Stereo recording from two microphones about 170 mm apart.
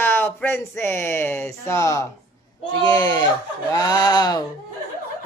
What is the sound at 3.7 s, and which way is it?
Speech, 20° left (ahead or behind).